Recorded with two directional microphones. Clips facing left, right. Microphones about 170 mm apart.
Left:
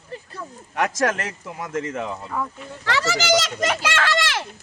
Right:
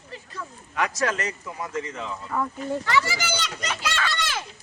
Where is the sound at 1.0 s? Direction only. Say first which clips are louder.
Left 3 dB; 60° left (ahead or behind).